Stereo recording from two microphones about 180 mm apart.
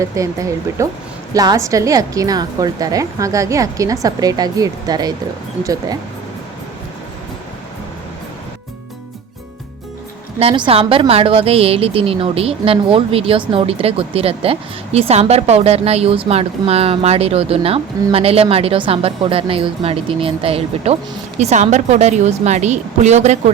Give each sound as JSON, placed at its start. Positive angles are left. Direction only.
{"t": 0.0, "sound": "a woman's voice", "side_deg": -15}
{"t": 10.4, "sound": "a woman's voice", "side_deg": -30}